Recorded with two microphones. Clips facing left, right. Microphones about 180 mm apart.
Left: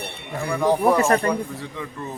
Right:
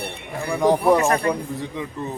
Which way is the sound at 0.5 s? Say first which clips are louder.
Right 1 dB; 15° right (ahead or behind).